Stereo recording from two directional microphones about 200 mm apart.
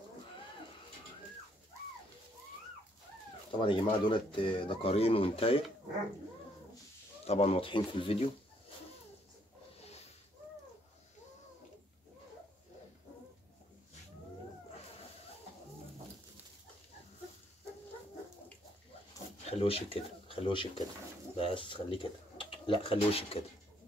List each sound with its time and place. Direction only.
3.5 s speech: 25° left (ahead or behind)
7.2 s speech: 30° left (ahead or behind)
19.6 s speech: 30° left (ahead or behind)